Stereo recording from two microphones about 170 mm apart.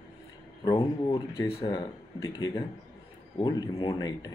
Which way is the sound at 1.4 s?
30° left (ahead or behind).